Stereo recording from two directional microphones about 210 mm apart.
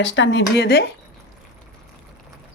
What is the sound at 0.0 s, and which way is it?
Speech, 60° left (ahead or behind).